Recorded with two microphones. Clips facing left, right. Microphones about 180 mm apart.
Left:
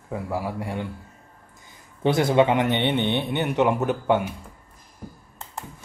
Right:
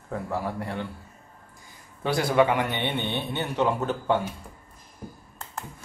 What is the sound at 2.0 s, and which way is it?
A man's voice, 20° left (ahead or behind).